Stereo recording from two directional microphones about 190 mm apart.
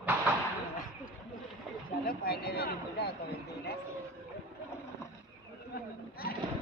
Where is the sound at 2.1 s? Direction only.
55° left (ahead or behind).